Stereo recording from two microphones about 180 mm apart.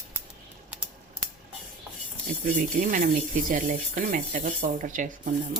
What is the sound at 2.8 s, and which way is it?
Speech, 45° right (ahead or behind).